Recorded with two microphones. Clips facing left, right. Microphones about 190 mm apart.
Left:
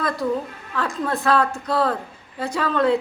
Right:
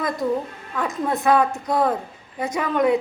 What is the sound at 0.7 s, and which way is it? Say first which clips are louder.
A woman's voice: right 1 dB; 20° right (ahead or behind).